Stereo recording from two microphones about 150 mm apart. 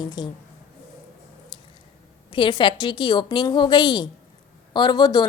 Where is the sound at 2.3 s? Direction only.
35° left (ahead or behind).